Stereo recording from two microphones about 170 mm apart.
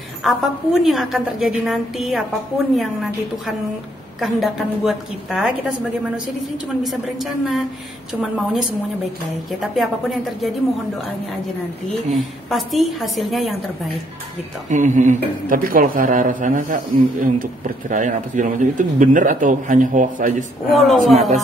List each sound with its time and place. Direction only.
0.2 s a woman's voice: centre (ahead or behind)
12.1 s a woman's voice: centre (ahead or behind)
14.7 s a man's voice: 45° right (ahead or behind)
20.7 s a woman's voice: centre (ahead or behind)